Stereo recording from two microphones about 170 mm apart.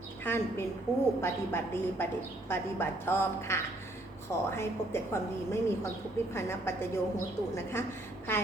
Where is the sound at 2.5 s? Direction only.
15° left (ahead or behind).